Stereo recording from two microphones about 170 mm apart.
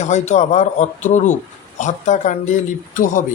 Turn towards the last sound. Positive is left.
turn(degrees=50)  # may be behind; listen again after turning